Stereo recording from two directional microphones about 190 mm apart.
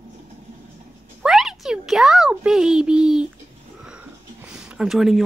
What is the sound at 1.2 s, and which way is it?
A child's voice, centre (ahead or behind).